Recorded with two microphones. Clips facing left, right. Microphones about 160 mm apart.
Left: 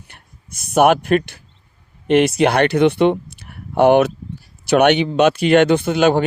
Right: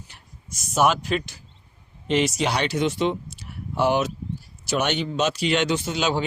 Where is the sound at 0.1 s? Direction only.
60° left (ahead or behind).